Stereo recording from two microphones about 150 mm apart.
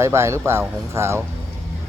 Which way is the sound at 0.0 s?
20° right (ahead or behind).